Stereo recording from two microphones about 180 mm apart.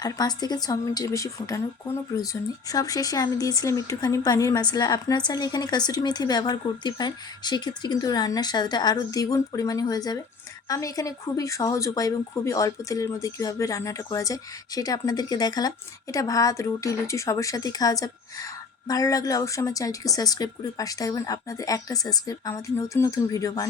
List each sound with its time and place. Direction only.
0.0 s speech: 20° left (ahead or behind)